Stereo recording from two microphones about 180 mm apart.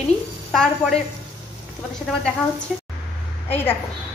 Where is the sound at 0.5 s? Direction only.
Centre (ahead or behind).